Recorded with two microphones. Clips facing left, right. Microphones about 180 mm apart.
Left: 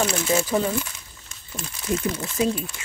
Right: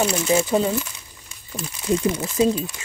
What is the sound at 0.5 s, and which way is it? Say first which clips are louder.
Speech: right 3 dB; 20° right (ahead or behind).